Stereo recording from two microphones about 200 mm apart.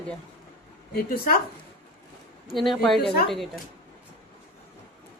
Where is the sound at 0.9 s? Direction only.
45° left (ahead or behind).